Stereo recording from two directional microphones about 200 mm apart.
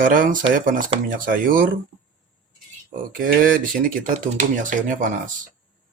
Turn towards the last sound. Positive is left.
turn(degrees=-40)  # may be behind; listen again after turning